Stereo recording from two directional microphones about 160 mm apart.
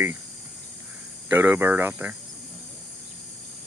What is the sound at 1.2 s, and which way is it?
Speech, 10° right (ahead or behind).